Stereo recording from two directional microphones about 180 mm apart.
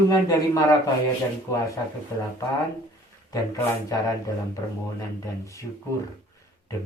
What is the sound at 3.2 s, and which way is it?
Speech, 20° left (ahead or behind).